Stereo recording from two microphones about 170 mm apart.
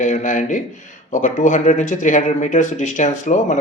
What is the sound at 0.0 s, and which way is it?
Speech, 45° left (ahead or behind).